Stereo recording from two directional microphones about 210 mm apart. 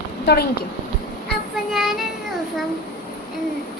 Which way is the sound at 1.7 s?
Centre (ahead or behind).